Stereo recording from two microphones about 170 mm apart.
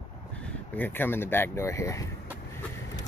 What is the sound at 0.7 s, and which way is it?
Speech, 10° left (ahead or behind).